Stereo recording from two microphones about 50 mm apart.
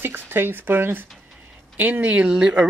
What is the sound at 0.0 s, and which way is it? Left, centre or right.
Speech, right.